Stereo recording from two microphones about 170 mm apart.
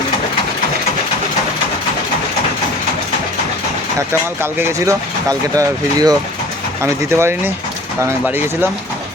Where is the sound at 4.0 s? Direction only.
15° right (ahead or behind).